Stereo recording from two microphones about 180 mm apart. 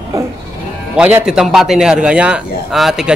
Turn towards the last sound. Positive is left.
turn(degrees=0)  # may be behind; listen again after turning